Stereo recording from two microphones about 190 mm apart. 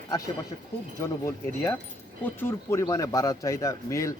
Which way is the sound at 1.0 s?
15° left (ahead or behind).